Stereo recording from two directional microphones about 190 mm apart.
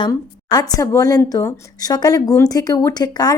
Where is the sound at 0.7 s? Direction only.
20° left (ahead or behind).